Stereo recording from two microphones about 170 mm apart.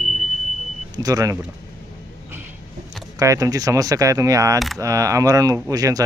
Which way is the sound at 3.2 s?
20° right (ahead or behind).